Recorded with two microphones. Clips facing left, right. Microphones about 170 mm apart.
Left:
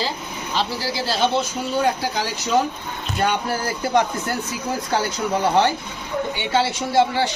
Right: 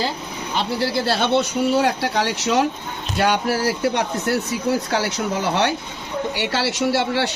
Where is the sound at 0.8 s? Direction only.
60° right (ahead or behind).